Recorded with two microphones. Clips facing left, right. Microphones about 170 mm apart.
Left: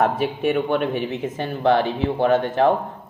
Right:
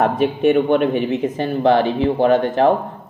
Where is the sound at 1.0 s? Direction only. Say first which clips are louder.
Right 6 dB; 60° right (ahead or behind).